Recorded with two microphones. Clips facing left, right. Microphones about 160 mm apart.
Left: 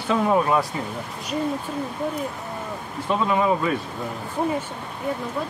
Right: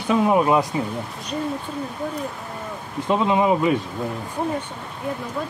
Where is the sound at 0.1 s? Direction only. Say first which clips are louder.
Right 2 dB; 20° right (ahead or behind).